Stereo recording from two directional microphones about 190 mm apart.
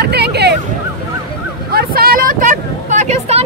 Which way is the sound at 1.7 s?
55° right (ahead or behind).